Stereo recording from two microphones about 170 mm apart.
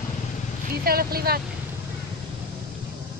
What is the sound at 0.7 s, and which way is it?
Speech, 65° right (ahead or behind).